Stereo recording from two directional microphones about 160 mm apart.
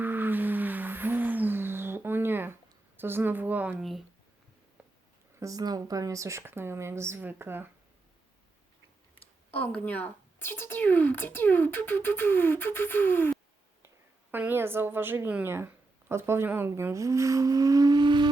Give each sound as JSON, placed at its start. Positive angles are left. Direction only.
{"t": 0.0, "sound": "music", "side_deg": -10}
{"t": 3.0, "sound": "speech", "side_deg": -15}
{"t": 5.4, "sound": "speech", "side_deg": -20}
{"t": 9.5, "sound": "speech", "side_deg": 10}
{"t": 14.3, "sound": "speech", "side_deg": -10}